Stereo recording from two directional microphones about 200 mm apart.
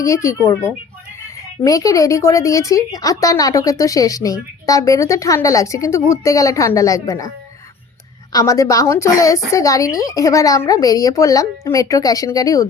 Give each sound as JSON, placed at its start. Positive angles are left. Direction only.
{"t": 0.0, "sound": "a woman's voice", "side_deg": 15}
{"t": 1.6, "sound": "a woman's voice", "side_deg": 15}
{"t": 8.3, "sound": "a woman's voice", "side_deg": 15}